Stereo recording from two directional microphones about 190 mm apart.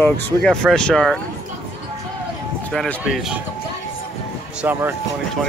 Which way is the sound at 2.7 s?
5° left (ahead or behind).